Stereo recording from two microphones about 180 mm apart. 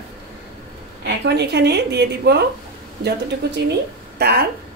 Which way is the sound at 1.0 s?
70° right (ahead or behind).